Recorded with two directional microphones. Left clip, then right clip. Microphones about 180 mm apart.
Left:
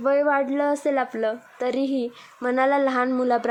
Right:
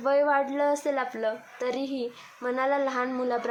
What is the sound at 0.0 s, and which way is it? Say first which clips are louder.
A woman's voice: left 3 dB; 35° left (ahead or behind).